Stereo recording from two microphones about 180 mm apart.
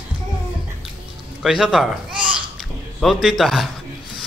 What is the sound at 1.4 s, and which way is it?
Speech, centre (ahead or behind).